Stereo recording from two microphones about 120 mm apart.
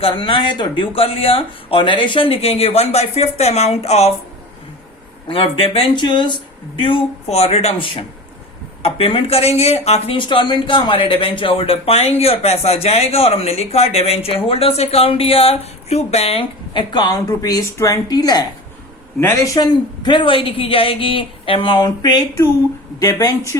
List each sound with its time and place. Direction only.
0.0 s speech: 45° left (ahead or behind)
5.3 s speech: 50° left (ahead or behind)
10.2 s speech: 40° left (ahead or behind)
19.5 s speech: 40° left (ahead or behind)